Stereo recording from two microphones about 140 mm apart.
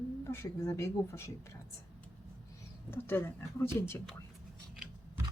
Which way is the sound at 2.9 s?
15° left (ahead or behind).